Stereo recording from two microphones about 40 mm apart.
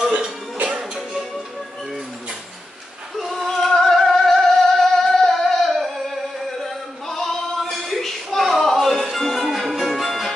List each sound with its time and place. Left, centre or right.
0.7 s music: right
3.2 s female singing: centre
3.4 s music: centre
6.6 s a sound: centre
9.1 s music: centre